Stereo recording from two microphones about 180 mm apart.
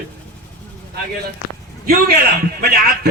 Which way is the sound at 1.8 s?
55° right (ahead or behind).